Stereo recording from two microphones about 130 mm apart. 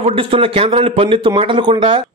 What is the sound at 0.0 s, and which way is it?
A man's voice, 45° right (ahead or behind).